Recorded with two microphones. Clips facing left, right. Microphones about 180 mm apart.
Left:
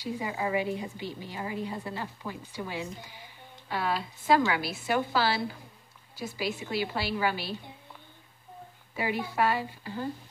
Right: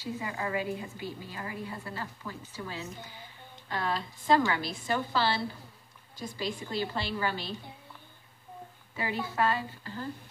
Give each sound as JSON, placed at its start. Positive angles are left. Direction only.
{"t": 0.0, "sound": "a woman's voice", "side_deg": 15}
{"t": 8.9, "sound": "a woman's voice", "side_deg": 15}